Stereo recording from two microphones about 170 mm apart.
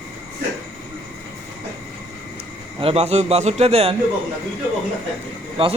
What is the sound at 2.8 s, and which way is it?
A man's voice, 35° right (ahead or behind).